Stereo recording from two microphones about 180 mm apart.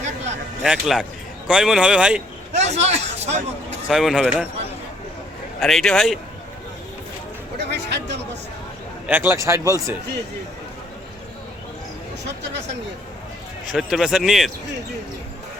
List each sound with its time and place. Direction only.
0.6 s speech: centre (ahead or behind)
2.5 s a man's voice: 40° right (ahead or behind)
3.8 s speech: 5° right (ahead or behind)
5.5 s speech: centre (ahead or behind)
7.6 s speech: 70° right (ahead or behind)
9.0 s speech: 10° right (ahead or behind)
13.7 s speech: centre (ahead or behind)